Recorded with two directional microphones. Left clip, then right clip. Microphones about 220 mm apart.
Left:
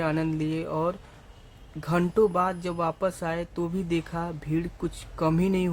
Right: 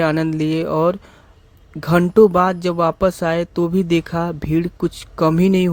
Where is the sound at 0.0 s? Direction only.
35° right (ahead or behind).